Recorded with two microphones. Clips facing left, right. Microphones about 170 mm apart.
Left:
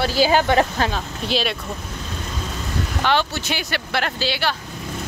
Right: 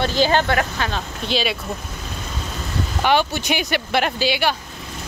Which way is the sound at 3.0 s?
15° right (ahead or behind).